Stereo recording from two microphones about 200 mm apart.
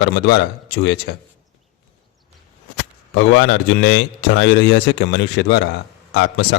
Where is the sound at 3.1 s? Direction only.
70° left (ahead or behind).